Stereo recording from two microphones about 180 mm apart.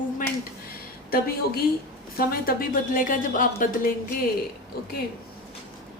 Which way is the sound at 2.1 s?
55° left (ahead or behind).